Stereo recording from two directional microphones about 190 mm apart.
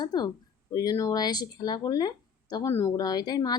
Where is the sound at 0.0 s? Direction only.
20° left (ahead or behind).